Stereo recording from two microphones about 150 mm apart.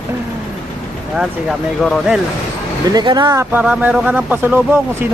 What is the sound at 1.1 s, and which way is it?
Speech, 5° right (ahead or behind).